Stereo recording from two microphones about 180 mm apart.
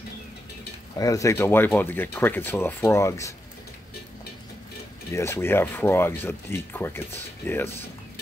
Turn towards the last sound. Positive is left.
turn(degrees=10)  # may be behind; listen again after turning